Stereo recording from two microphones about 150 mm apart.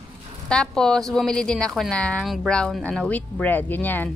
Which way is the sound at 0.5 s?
5° left (ahead or behind).